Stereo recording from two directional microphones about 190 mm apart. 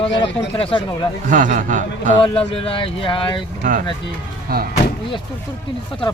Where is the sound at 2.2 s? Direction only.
30° left (ahead or behind).